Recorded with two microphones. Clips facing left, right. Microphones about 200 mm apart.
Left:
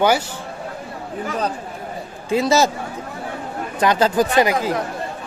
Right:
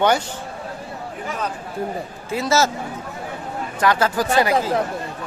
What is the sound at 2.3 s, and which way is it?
Speech, 15° left (ahead or behind).